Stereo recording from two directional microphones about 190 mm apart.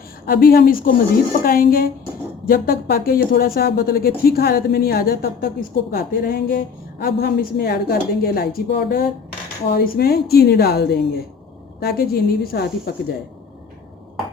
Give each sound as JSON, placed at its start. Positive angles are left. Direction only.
{"t": 0.3, "sound": "speech", "side_deg": 50}